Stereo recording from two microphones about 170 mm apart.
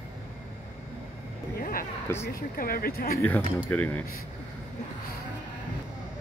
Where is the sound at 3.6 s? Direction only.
10° left (ahead or behind).